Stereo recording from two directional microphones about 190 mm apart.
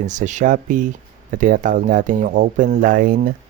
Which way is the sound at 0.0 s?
40° right (ahead or behind).